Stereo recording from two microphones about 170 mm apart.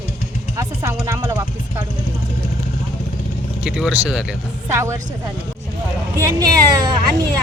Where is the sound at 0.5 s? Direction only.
15° right (ahead or behind).